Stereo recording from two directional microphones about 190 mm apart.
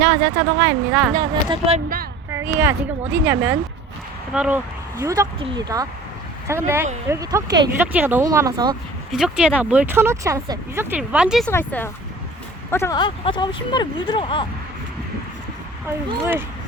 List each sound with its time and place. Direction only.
0.0 s speech: 25° right (ahead or behind)
1.1 s speech: 25° right (ahead or behind)
2.6 s speech: 10° right (ahead or behind)
7.8 s speech: 10° right (ahead or behind)
9.1 s speech: 5° right (ahead or behind)
11.5 s speech: 10° left (ahead or behind); by 14.4 s 25° left (ahead or behind)